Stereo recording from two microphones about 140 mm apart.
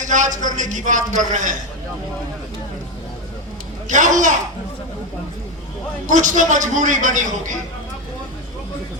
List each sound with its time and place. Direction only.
0.0 s a man's voice: 60° right (ahead or behind)
3.8 s a man's voice: 60° right (ahead or behind)
6.1 s a man's voice: 60° right (ahead or behind)